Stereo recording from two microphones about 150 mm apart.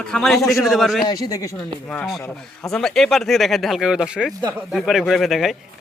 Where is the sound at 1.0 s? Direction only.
25° left (ahead or behind).